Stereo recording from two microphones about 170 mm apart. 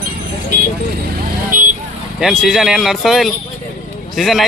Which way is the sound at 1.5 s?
55° right (ahead or behind).